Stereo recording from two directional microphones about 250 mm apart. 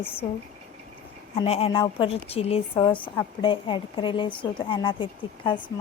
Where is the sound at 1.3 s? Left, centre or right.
Left.